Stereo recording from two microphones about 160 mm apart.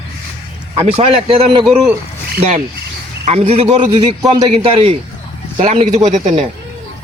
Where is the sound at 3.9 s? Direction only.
20° right (ahead or behind).